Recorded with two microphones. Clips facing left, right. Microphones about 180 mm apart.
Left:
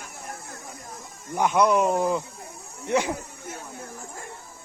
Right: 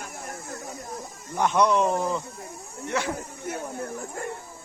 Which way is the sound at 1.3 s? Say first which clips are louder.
Left 1 dB; 10° left (ahead or behind).